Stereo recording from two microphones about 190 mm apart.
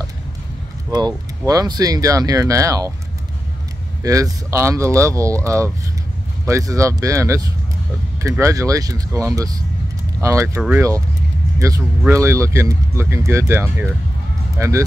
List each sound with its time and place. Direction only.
0.8 s speech: 20° right (ahead or behind)
4.0 s speech: 20° right (ahead or behind)
12.0 s speech: 15° right (ahead or behind)